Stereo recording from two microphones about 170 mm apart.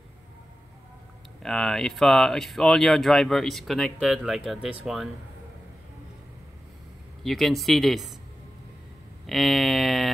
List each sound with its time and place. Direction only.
1.4 s speech: centre (ahead or behind)
7.2 s speech: centre (ahead or behind)
9.2 s speech: centre (ahead or behind)